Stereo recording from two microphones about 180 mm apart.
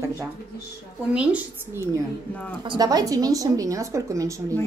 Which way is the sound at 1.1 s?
10° right (ahead or behind).